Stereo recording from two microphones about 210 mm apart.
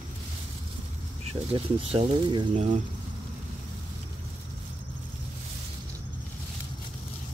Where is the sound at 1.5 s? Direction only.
30° right (ahead or behind).